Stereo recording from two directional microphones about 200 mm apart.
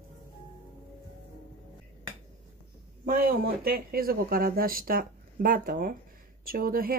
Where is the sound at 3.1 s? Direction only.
45° right (ahead or behind).